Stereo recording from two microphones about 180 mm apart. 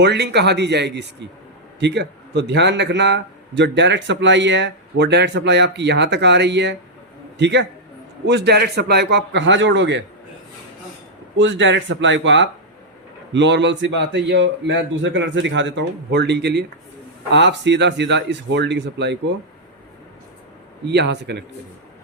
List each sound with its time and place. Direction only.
0.0 s a man's voice: 65° right (ahead or behind)
8.3 s a man's voice: 65° right (ahead or behind)
11.3 s a man's voice: 90° right; by 19.1 s 75° right (ahead or behind)
20.8 s a man's voice: 70° right (ahead or behind)